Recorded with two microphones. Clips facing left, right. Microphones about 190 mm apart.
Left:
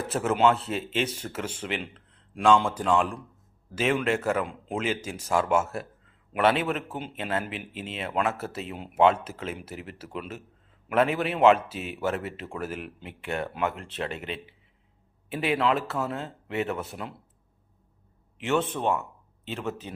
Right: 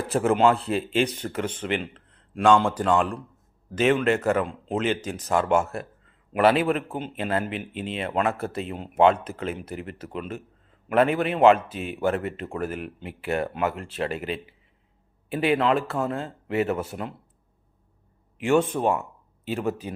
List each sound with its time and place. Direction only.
0.1 s speech: centre (ahead or behind)
1.9 s a sound: centre (ahead or behind)
2.6 s speech: 10° left (ahead or behind)
2.8 s speech: 5° right (ahead or behind)
18.5 s speech: 40° right (ahead or behind)
19.8 s a man's voice: 10° right (ahead or behind)